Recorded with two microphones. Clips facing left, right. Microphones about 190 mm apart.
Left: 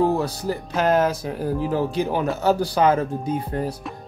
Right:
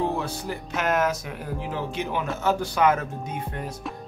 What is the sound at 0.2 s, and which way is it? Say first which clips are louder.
Speech: left 6 dB; 35° left (ahead or behind).